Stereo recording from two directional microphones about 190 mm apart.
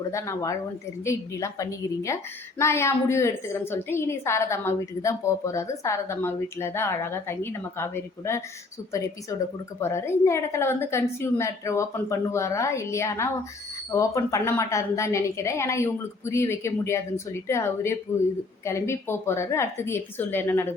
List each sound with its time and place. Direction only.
0.1 s a woman's voice: 15° left (ahead or behind)